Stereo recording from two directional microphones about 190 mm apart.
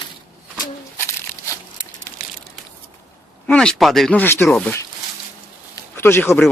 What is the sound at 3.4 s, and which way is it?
Speech, 5° left (ahead or behind).